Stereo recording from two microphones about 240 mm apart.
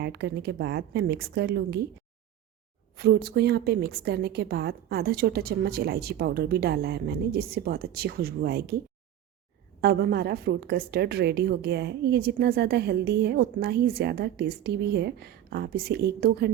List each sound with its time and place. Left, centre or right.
0.0 s a woman's voice: right
2.9 s a woman's voice: right
9.8 s a woman's voice: right